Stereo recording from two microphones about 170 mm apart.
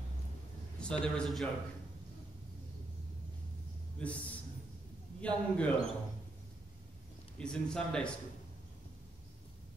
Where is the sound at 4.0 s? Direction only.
10° left (ahead or behind).